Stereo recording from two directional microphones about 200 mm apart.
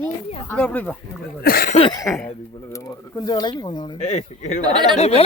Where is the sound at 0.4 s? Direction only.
5° left (ahead or behind).